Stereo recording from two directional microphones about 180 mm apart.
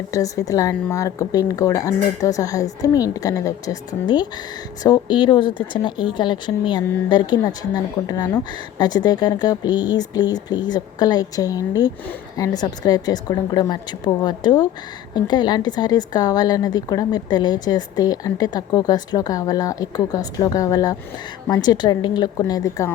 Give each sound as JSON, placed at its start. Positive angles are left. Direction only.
{"t": 0.1, "sound": "a woman's voice", "side_deg": 20}